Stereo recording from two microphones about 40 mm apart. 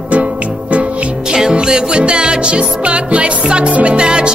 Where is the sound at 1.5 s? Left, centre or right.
Centre.